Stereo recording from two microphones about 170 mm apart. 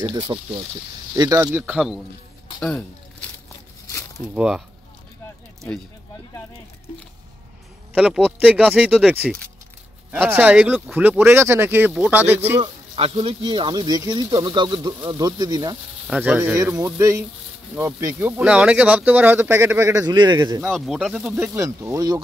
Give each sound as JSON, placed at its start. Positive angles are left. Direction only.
{"t": 0.0, "sound": "speech", "side_deg": -25}
{"t": 4.4, "sound": "speech", "side_deg": -5}
{"t": 7.9, "sound": "speech", "side_deg": -5}
{"t": 9.2, "sound": "speech", "side_deg": 5}
{"t": 10.1, "sound": "speech", "side_deg": -10}
{"t": 12.4, "sound": "speech", "side_deg": -25}
{"t": 16.1, "sound": "speech", "side_deg": -10}
{"t": 20.6, "sound": "speech", "side_deg": 0}